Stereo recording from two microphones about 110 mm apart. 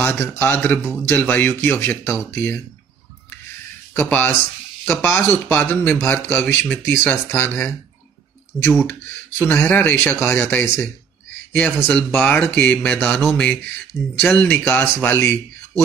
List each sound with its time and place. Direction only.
0.0 s speech: 20° left (ahead or behind)
3.9 s speech: 15° left (ahead or behind)
8.8 s speech: 15° left (ahead or behind)